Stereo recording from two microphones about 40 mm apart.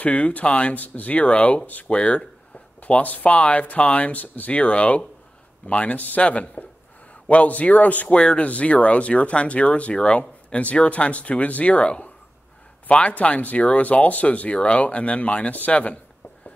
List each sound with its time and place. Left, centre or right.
0.0 s speech: left
2.8 s speech: left
4.5 s speech: left
6.2 s speech: left
8.1 s speech: left